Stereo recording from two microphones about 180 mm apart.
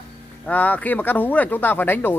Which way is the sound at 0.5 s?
10° left (ahead or behind).